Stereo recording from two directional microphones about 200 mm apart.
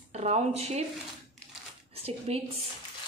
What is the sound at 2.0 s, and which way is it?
Speech, 30° right (ahead or behind).